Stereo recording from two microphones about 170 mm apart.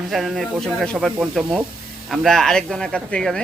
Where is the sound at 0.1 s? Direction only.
Centre (ahead or behind).